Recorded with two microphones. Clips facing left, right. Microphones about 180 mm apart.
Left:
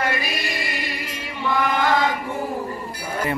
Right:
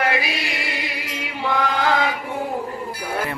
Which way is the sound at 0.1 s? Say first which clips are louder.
Right 2 dB; 70° right (ahead or behind).